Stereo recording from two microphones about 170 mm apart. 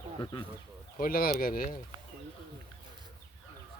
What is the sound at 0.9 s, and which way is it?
Speech, 60° left (ahead or behind).